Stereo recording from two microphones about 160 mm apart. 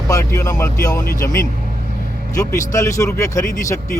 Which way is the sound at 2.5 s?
20° left (ahead or behind).